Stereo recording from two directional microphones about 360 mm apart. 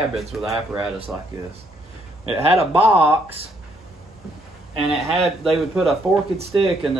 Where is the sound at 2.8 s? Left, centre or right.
Centre.